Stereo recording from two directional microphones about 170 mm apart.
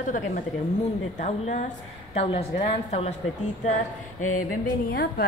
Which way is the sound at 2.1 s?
35° left (ahead or behind).